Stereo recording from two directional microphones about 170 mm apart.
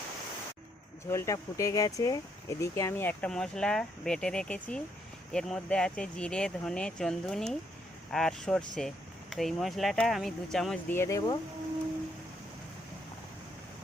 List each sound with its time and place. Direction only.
1.1 s speech: 15° left (ahead or behind)
10.9 s speech: 15° left (ahead or behind)